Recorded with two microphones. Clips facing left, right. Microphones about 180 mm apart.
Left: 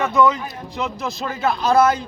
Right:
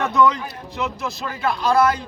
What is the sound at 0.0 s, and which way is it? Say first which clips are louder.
Speech: left 1 dB; centre (ahead or behind).